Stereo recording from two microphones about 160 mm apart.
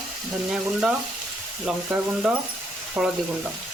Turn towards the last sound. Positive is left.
turn(degrees=-5)  # may be behind; listen again after turning